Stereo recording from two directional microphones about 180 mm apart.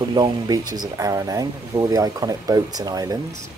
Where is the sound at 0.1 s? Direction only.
20° right (ahead or behind).